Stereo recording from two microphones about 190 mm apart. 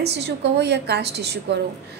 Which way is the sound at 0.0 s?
60° right (ahead or behind).